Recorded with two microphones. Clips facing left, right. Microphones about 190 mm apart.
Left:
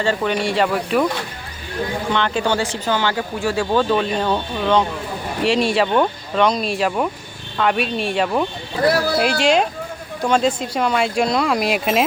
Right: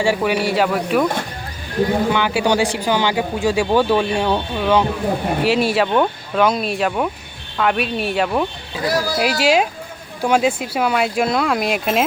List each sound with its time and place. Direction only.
0.0 s speech: 10° right (ahead or behind)
2.1 s speech: 10° right (ahead or behind)
8.8 s speech: 60° left (ahead or behind)
9.1 s speech: 5° right (ahead or behind)